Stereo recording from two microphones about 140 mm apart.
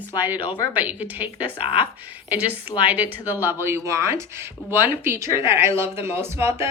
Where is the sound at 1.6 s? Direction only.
40° left (ahead or behind).